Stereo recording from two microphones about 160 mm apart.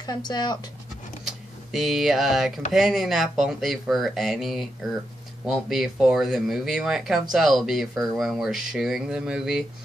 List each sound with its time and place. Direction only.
0.0 s speech: 25° left (ahead or behind)
1.2 s a sound: centre (ahead or behind)
2.7 s speech: centre (ahead or behind)